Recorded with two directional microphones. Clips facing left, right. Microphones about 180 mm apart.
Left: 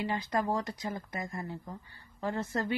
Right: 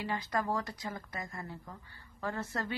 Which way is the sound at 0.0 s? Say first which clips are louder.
Left 3 dB; 20° left (ahead or behind).